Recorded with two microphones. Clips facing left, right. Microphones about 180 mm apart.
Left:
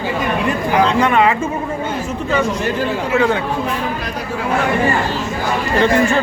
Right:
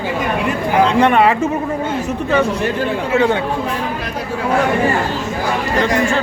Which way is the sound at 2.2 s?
55° right (ahead or behind).